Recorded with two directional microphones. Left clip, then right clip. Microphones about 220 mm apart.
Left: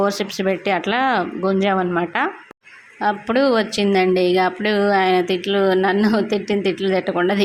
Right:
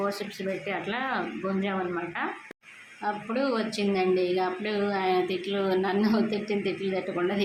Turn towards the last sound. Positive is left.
turn(degrees=35)  # may be behind; listen again after turning